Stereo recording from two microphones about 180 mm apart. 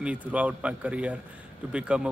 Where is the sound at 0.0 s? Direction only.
5° right (ahead or behind).